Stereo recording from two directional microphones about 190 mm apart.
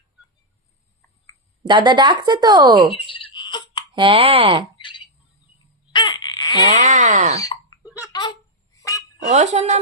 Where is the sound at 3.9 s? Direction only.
25° right (ahead or behind).